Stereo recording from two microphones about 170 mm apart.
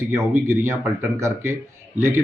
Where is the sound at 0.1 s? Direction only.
15° right (ahead or behind).